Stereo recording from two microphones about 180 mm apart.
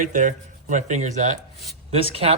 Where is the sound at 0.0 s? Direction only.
45° right (ahead or behind).